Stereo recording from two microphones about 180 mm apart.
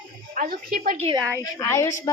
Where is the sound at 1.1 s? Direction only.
15° right (ahead or behind).